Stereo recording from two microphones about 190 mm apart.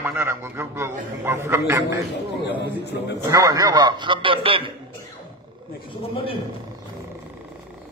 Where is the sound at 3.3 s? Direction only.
20° right (ahead or behind).